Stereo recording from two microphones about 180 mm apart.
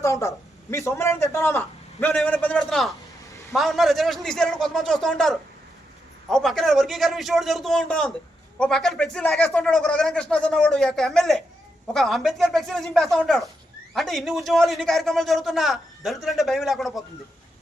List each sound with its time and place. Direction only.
0.0 s a man's voice: 15° left (ahead or behind); by 17.0 s centre (ahead or behind)